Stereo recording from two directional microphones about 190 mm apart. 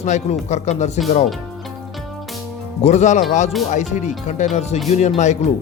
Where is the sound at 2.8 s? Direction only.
40° left (ahead or behind).